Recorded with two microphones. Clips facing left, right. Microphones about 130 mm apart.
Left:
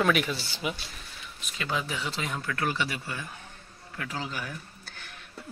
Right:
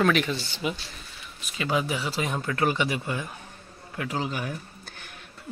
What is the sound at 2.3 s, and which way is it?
Speech, 20° right (ahead or behind).